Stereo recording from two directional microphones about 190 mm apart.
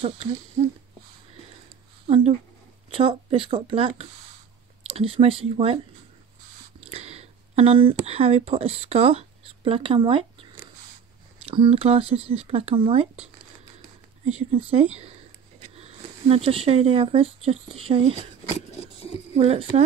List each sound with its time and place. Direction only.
0.0 s speech: 30° right (ahead or behind)
2.0 s speech: 30° right (ahead or behind)
6.8 s speech: 35° right (ahead or behind)
14.2 s speech: 35° right (ahead or behind)
19.3 s speech: 35° right (ahead or behind)